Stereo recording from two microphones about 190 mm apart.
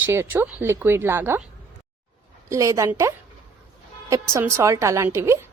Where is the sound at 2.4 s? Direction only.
15° right (ahead or behind).